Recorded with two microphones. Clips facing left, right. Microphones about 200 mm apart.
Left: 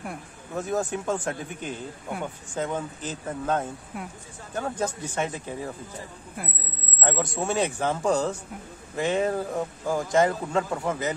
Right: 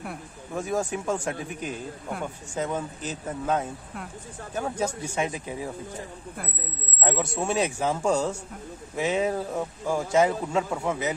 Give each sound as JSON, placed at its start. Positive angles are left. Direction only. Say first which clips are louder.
{"t": 0.0, "sound": "speech", "louder": "even", "side_deg": -5}
{"t": 7.0, "sound": "speech", "louder": "even", "side_deg": -10}